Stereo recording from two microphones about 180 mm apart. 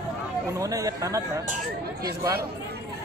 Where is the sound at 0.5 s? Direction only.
20° right (ahead or behind).